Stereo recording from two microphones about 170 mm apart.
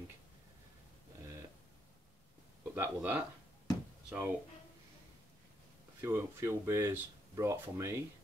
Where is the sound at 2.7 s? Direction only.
10° right (ahead or behind).